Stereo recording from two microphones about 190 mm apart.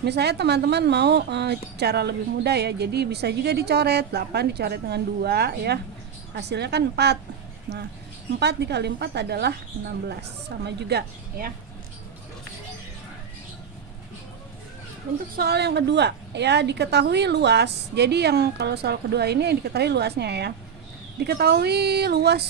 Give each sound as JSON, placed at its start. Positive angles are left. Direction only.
{"t": 0.0, "sound": "a woman's voice", "side_deg": -60}
{"t": 8.4, "sound": "a woman's voice", "side_deg": -60}
{"t": 10.6, "sound": "a woman's voice", "side_deg": -60}
{"t": 15.3, "sound": "a woman's voice", "side_deg": -55}